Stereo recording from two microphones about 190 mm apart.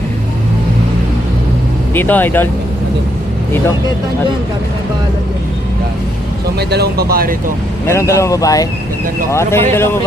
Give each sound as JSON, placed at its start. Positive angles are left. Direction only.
{"t": 1.9, "sound": "speech", "side_deg": 10}
{"t": 6.6, "sound": "speech", "side_deg": -60}
{"t": 7.9, "sound": "speech", "side_deg": 15}